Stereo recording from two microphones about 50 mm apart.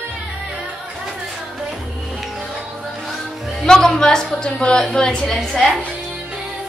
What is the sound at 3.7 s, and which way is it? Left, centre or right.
A woman's voice, centre.